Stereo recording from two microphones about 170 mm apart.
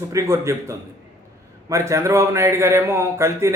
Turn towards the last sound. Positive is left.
turn(degrees=-15)  # may be behind; listen again after turning